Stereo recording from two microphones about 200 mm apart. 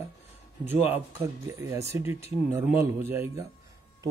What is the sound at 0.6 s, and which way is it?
Speech, 10° right (ahead or behind).